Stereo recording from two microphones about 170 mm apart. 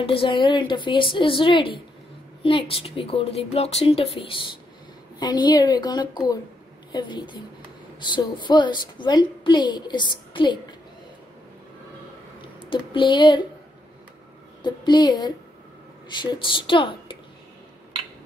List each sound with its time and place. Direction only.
0.0 s a woman's voice: 30° left (ahead or behind)
12.5 s speech: 30° left (ahead or behind)
14.6 s a woman's voice: 25° left (ahead or behind)